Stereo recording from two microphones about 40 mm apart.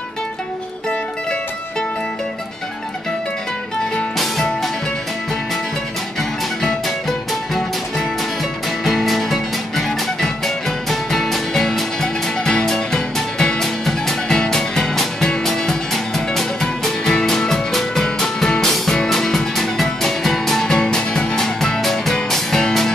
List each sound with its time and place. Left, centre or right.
6.6 s music: centre
20.9 s music: left